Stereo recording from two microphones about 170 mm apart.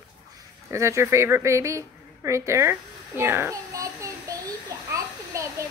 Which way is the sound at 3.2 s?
15° right (ahead or behind).